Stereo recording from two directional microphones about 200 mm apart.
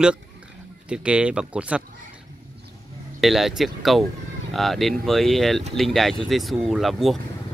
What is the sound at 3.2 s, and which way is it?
Speech, centre (ahead or behind).